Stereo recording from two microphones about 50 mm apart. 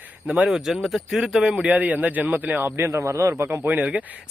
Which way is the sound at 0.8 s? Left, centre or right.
Centre.